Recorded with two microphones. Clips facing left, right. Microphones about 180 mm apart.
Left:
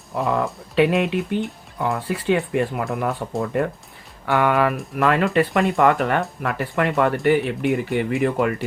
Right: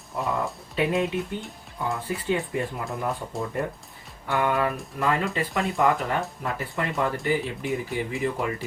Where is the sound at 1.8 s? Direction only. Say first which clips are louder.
Left 6 dB; 75° left (ahead or behind).